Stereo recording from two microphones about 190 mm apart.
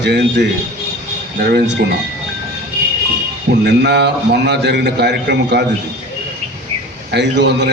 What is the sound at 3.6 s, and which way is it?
A man's voice, 60° right (ahead or behind).